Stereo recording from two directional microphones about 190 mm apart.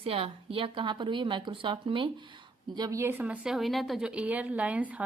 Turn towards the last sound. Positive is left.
turn(degrees=-10)  # may be behind; listen again after turning